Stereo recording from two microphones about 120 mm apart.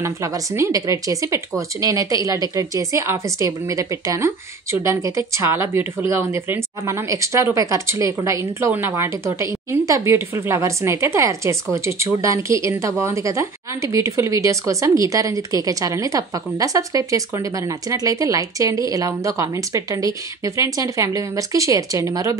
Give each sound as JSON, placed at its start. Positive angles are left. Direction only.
{"t": 0.0, "sound": "speech", "side_deg": -25}